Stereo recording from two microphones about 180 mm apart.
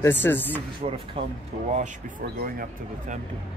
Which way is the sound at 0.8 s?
30° right (ahead or behind).